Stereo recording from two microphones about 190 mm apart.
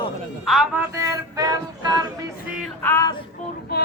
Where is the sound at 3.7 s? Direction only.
55° left (ahead or behind).